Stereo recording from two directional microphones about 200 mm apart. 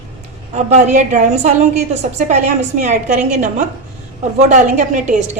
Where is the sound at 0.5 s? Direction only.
35° right (ahead or behind).